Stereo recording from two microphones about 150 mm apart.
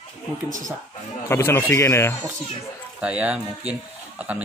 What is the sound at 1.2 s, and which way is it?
Speech, 15° left (ahead or behind).